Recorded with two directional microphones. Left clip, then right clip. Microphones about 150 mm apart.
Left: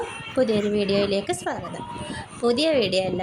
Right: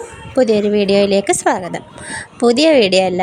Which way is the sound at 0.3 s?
45° right (ahead or behind).